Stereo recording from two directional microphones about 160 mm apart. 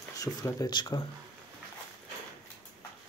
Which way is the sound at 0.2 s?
20° left (ahead or behind).